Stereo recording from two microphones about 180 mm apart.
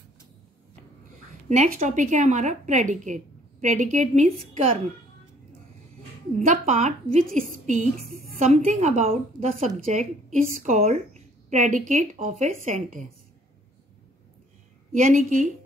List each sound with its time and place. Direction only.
1.5 s a woman's voice: 40° right (ahead or behind)
6.3 s a woman's voice: 45° right (ahead or behind)
14.9 s a woman's voice: 40° right (ahead or behind)